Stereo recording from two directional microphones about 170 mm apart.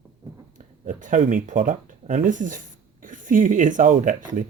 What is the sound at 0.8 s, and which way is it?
Speech, 50° right (ahead or behind).